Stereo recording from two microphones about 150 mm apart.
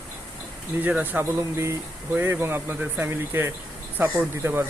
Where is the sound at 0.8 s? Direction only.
10° right (ahead or behind).